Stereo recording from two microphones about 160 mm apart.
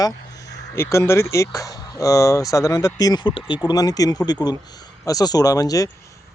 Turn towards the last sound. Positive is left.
turn(degrees=20)  # may be behind; listen again after turning